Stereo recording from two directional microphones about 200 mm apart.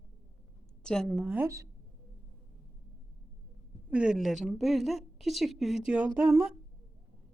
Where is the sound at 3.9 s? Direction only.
5° right (ahead or behind).